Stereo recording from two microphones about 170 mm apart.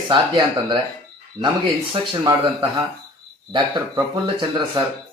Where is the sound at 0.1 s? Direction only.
25° right (ahead or behind).